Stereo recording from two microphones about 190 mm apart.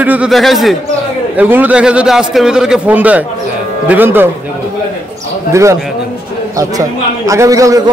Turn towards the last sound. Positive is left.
turn(degrees=-15)  # may be behind; listen again after turning